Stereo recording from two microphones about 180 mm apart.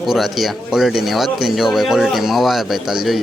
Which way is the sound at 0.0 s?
Centre (ahead or behind).